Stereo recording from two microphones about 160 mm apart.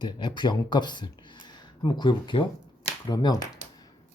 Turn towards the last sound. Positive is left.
turn(degrees=25)  # may be behind; listen again after turning